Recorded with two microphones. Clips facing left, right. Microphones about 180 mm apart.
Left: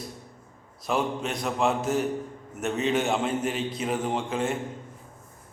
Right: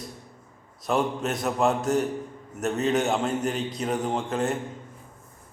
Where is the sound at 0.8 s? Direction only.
Centre (ahead or behind).